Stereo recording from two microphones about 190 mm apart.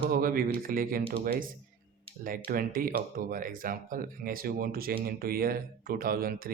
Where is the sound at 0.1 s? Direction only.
50° right (ahead or behind).